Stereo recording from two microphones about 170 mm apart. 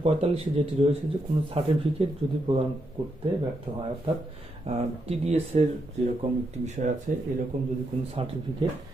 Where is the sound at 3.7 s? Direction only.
30° right (ahead or behind); by 7.3 s 50° right (ahead or behind).